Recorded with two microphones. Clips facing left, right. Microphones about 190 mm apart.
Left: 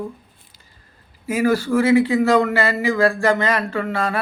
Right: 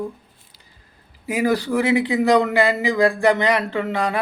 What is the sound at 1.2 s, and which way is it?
Speech, 15° right (ahead or behind).